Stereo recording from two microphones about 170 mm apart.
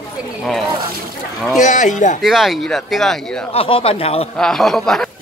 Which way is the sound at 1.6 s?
45° left (ahead or behind).